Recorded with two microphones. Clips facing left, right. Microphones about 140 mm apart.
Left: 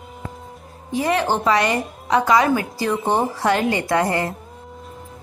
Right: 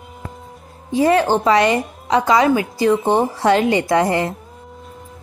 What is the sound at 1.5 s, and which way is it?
Speech, 25° right (ahead or behind).